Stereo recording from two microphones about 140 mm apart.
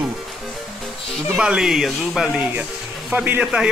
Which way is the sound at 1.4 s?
5° right (ahead or behind).